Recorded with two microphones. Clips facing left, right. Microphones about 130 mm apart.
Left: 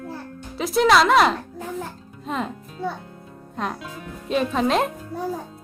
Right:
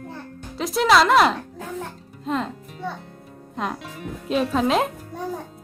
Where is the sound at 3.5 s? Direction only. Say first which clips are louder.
Even; centre (ahead or behind).